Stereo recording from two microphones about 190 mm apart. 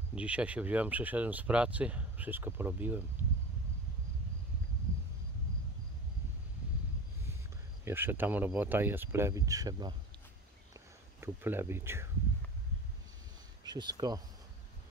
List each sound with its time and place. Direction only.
0.1 s speech: 5° right (ahead or behind)
7.8 s speech: 10° right (ahead or behind)
10.7 s a sound: 10° right (ahead or behind)
13.7 s speech: 25° right (ahead or behind)